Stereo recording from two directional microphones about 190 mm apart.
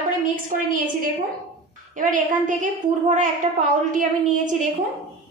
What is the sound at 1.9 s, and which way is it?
A woman's voice, 45° right (ahead or behind).